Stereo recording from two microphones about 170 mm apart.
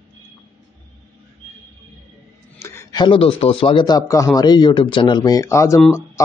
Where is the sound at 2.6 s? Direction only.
15° left (ahead or behind).